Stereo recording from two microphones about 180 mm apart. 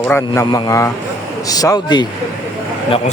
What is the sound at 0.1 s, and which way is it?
Speech, 15° left (ahead or behind).